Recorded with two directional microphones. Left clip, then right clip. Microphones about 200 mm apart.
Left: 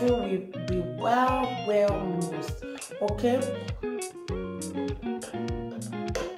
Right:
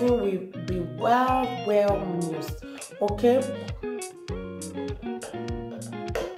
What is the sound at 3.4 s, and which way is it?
Music, centre (ahead or behind).